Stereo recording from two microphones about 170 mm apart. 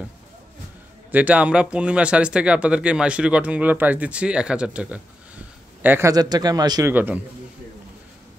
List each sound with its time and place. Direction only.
1.1 s a man's voice: 10° right (ahead or behind)
6.9 s speech: 10° right (ahead or behind)